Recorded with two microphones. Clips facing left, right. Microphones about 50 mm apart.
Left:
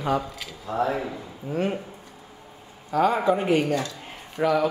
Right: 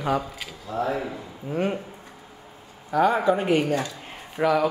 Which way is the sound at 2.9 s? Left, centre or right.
Centre.